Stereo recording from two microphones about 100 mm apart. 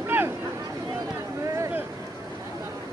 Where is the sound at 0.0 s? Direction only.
20° right (ahead or behind).